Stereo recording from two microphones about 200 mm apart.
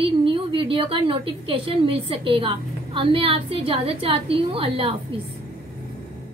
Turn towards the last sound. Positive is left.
turn(degrees=-25)  # may be behind; listen again after turning